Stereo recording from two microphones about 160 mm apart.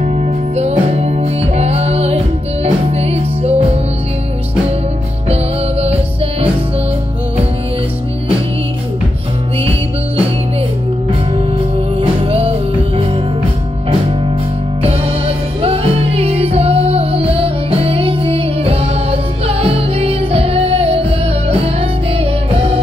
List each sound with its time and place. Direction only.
0.0 s music: 40° right (ahead or behind)
11.3 s music: 35° right (ahead or behind)
14.8 s music: 40° right (ahead or behind)